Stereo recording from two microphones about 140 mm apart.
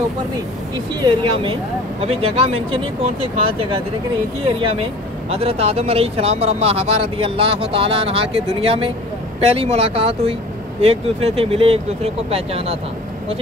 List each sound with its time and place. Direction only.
1.0 s speech: 35° right (ahead or behind)
5.3 s speech: 45° right (ahead or behind)